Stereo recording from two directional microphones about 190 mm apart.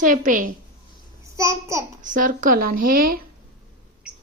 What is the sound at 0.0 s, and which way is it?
Speech, 45° right (ahead or behind).